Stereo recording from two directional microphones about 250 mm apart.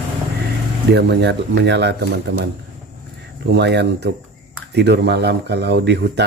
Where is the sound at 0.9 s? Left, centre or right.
Right.